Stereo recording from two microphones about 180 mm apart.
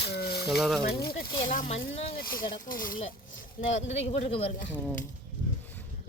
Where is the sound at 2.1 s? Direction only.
55° left (ahead or behind).